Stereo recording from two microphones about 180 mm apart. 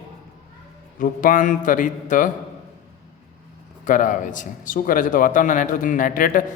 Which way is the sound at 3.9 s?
45° left (ahead or behind).